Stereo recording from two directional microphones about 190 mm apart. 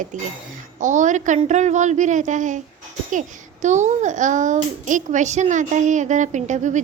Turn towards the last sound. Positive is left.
turn(degrees=-40)  # may be behind; listen again after turning